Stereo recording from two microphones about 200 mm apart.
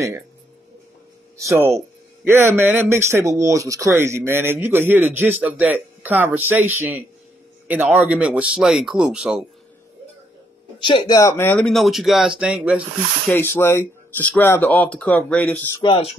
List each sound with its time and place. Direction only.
1.4 s speech: 15° right (ahead or behind)
10.8 s speech: 25° left (ahead or behind); by 12.8 s 5° right (ahead or behind)
13.3 s speech: 10° left (ahead or behind)
15.8 s speech: 30° left (ahead or behind)